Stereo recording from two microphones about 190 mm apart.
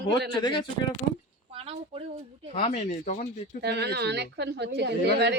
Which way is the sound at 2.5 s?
35° left (ahead or behind).